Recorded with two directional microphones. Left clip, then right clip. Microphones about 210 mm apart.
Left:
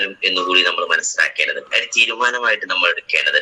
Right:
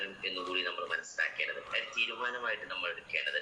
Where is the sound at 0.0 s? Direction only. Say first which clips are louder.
Left 19 dB; 50° left (ahead or behind).